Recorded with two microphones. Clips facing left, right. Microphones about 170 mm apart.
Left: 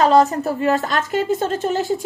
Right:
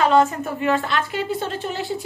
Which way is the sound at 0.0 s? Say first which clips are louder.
Left 3 dB; 40° left (ahead or behind).